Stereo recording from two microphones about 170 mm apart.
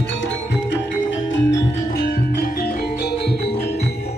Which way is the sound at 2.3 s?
60° left (ahead or behind).